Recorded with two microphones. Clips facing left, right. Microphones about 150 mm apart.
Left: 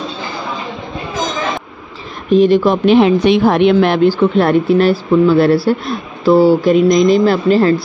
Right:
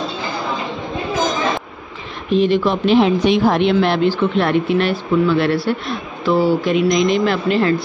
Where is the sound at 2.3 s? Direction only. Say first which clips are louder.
Left 5 dB; 40° left (ahead or behind).